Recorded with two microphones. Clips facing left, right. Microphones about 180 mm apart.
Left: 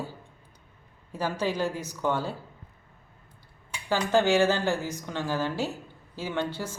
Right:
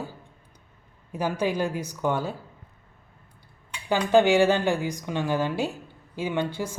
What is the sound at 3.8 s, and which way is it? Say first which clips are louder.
Speech: right 4 dB; 15° right (ahead or behind).